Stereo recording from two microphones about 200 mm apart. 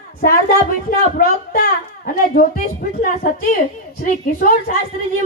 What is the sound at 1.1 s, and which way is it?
A child's voice, 45° left (ahead or behind).